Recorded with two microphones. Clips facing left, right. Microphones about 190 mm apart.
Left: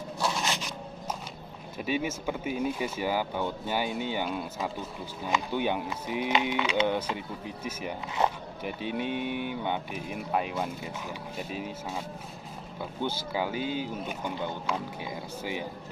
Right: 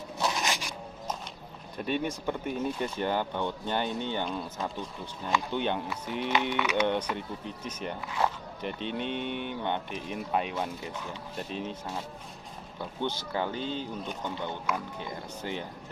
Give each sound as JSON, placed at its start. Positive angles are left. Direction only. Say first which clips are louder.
{"t": 0.2, "sound": "a sound", "louder": "even", "side_deg": 0}
{"t": 0.5, "sound": "a sound", "louder": "even", "side_deg": -10}
{"t": 1.8, "sound": "speech", "louder": "even", "side_deg": 5}
{"t": 6.5, "sound": "speech", "louder": "even", "side_deg": 30}
{"t": 7.2, "sound": "speech", "louder": "even", "side_deg": 5}
{"t": 8.2, "sound": "speech", "louder": "left 2 dB", "side_deg": 20}
{"t": 8.6, "sound": "speech", "louder": "left 1 dB", "side_deg": 5}
{"t": 13.0, "sound": "speech", "louder": "left 1 dB", "side_deg": 5}